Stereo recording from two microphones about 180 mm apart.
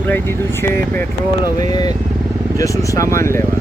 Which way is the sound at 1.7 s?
20° left (ahead or behind).